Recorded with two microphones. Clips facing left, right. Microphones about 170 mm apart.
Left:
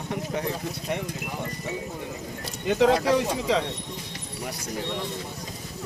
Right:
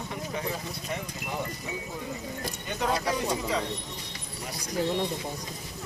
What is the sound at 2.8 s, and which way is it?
Speech, 90° left.